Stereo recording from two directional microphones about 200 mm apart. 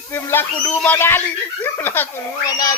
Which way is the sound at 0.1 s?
10° left (ahead or behind).